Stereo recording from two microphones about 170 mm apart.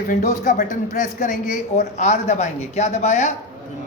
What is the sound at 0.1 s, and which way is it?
A man's voice, 50° left (ahead or behind).